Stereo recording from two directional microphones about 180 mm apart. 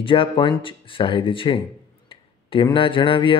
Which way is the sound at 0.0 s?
30° left (ahead or behind).